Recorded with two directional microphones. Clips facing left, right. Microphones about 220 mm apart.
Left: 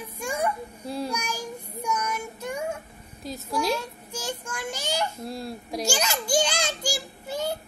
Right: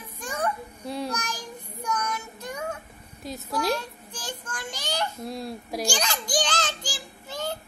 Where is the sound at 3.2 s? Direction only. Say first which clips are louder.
Even; centre (ahead or behind).